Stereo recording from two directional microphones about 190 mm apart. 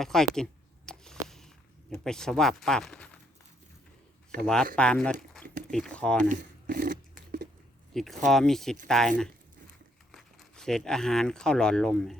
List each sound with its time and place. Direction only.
0.0 s speech: centre (ahead or behind)
0.9 s a sound: 5° left (ahead or behind)
1.9 s speech: 5° left (ahead or behind)
4.4 s speech: 5° left (ahead or behind)
6.2 s a sound: 45° right (ahead or behind)
7.9 s speech: centre (ahead or behind)